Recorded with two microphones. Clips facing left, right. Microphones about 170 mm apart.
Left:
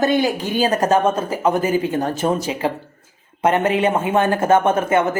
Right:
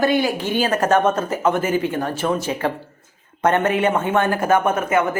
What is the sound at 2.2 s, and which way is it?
Speech, 25° left (ahead or behind).